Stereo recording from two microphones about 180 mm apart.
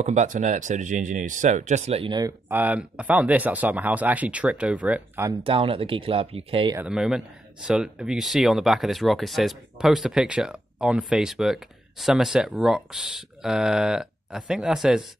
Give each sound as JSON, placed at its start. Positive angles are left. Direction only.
{"t": 0.0, "sound": "speech", "side_deg": -40}
{"t": 2.4, "sound": "speech", "side_deg": -10}
{"t": 5.4, "sound": "speech", "side_deg": -30}
{"t": 6.8, "sound": "speech", "side_deg": -5}